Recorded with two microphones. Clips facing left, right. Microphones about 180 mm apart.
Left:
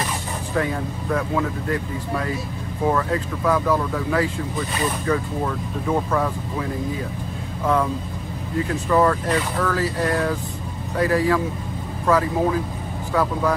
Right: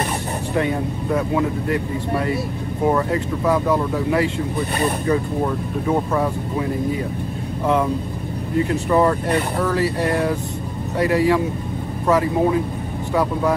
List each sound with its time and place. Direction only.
0.6 s speech: 20° right (ahead or behind)
7.6 s speech: 20° right (ahead or behind)